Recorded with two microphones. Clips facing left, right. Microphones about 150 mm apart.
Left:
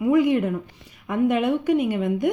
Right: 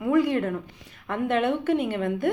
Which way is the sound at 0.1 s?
15° left (ahead or behind).